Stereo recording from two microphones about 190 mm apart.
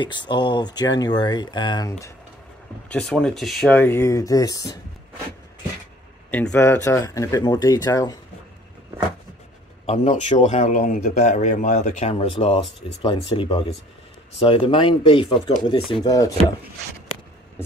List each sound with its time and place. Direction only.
0.0 s speech: 25° left (ahead or behind)
2.9 s speech: 5° left (ahead or behind)
6.3 s speech: 5° left (ahead or behind)
9.8 s speech: 35° left (ahead or behind); by 16.3 s 20° left (ahead or behind)